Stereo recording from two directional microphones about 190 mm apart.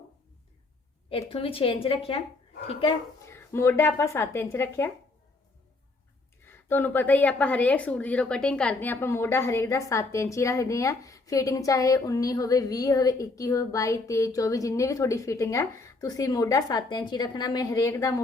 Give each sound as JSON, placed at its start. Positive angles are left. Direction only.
{"t": 1.1, "sound": "a woman's voice", "side_deg": 30}
{"t": 3.2, "sound": "a woman's voice", "side_deg": 15}
{"t": 6.4, "sound": "a woman's voice", "side_deg": 10}